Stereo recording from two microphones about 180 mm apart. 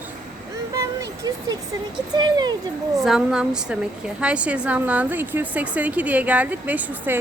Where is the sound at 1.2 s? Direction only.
20° right (ahead or behind).